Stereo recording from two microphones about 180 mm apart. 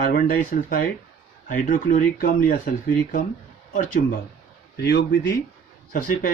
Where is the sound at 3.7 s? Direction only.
45° left (ahead or behind).